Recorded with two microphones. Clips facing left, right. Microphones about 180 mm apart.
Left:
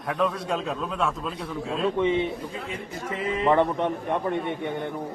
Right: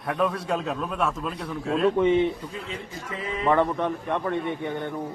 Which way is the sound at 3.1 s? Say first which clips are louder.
Left 2 dB; 25° left (ahead or behind).